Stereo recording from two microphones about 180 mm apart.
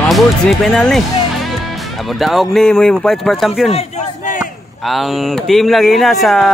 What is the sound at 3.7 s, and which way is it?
Speech, 40° left (ahead or behind).